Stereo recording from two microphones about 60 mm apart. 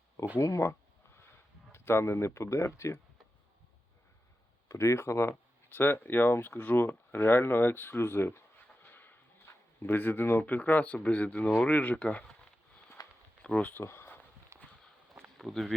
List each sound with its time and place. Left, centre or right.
0.6 s a sound: left
1.7 s speech: left
4.7 s speech: left
5.6 s speech: left
8.8 s a sound: left
9.8 s speech: left
13.0 s walk: left
13.4 s speech: left
13.8 s a sound: left
14.5 s walk: right
15.4 s speech: centre